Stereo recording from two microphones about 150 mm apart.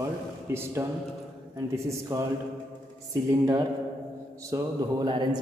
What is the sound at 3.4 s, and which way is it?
A man's voice, 20° right (ahead or behind).